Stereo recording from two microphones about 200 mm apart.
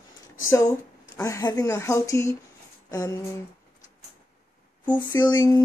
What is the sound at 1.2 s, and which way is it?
Speech, 15° left (ahead or behind).